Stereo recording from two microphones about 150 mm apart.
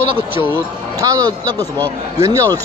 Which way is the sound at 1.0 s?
25° right (ahead or behind).